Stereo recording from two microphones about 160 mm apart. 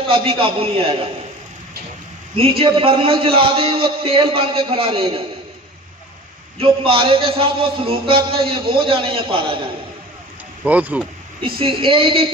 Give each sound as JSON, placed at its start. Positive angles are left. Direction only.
{"t": 0.1, "sound": "a man's voice", "side_deg": -35}
{"t": 2.6, "sound": "a man's voice", "side_deg": -35}
{"t": 6.6, "sound": "a man's voice", "side_deg": -35}
{"t": 10.6, "sound": "speech", "side_deg": -10}
{"t": 11.4, "sound": "a man's voice", "side_deg": -35}